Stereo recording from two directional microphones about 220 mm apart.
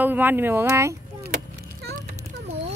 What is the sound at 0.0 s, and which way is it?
Speech, 10° right (ahead or behind).